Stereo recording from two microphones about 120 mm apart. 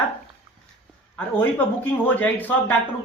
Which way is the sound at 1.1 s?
15° left (ahead or behind).